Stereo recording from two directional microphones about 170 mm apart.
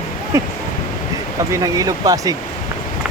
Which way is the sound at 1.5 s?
20° right (ahead or behind).